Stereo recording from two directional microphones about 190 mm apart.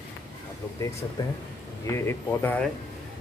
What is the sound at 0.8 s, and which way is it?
Speech, 15° left (ahead or behind).